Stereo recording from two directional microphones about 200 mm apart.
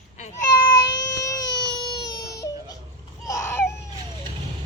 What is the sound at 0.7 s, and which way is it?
Baby cry, 20° left (ahead or behind).